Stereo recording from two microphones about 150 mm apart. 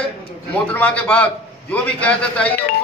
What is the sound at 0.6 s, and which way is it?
A man's voice, 10° left (ahead or behind).